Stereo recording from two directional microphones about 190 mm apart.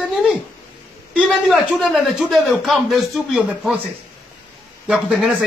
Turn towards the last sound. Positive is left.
turn(degrees=-5)  # may be behind; listen again after turning